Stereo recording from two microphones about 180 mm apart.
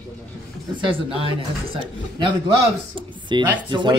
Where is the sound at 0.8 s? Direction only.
30° right (ahead or behind).